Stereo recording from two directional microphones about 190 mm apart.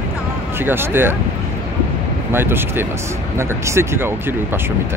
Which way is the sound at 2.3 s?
10° right (ahead or behind).